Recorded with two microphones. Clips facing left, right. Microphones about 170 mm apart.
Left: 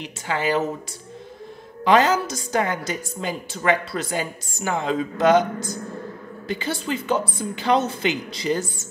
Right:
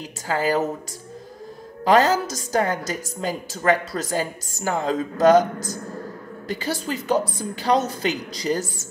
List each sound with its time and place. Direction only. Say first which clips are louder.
0.0 s a woman's voice: right 1 dB; 40° right (ahead or behind)
1.9 s a woman's voice: even; 40° right (ahead or behind)